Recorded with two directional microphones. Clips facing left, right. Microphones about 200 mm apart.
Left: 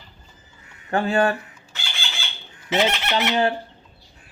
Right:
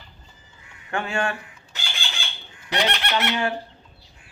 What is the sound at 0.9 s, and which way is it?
Speech, 35° left (ahead or behind).